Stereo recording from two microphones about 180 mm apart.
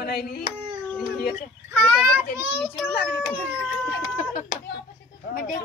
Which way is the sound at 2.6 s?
10° left (ahead or behind).